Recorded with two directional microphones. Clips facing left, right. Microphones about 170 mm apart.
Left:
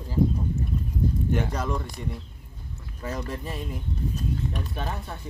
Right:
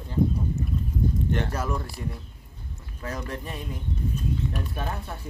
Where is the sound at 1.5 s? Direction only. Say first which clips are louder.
Even; centre (ahead or behind).